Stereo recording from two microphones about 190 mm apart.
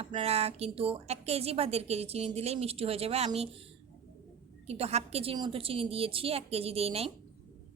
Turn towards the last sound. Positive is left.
turn(degrees=-30)  # may be behind; listen again after turning